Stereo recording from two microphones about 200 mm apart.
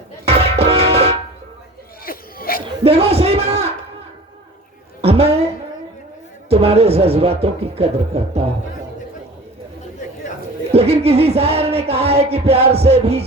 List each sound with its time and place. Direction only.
0.3 s music: 30° right (ahead or behind)
2.0 s cough: 45° left (ahead or behind)
2.6 s a man's voice: 30° right (ahead or behind)
5.0 s a sound: 30° right (ahead or behind)
6.5 s speech: 30° right (ahead or behind)
10.7 s speech: 30° right (ahead or behind)